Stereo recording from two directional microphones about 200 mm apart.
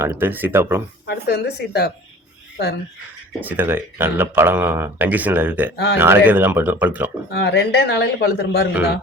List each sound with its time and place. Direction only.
0.0 s speech: 10° right (ahead or behind)
1.0 s speech: 55° left (ahead or behind)
3.4 s speech: 10° right (ahead or behind)
5.7 s speech: 55° left (ahead or behind)
6.0 s speech: 10° right (ahead or behind)
7.3 s speech: 55° left (ahead or behind)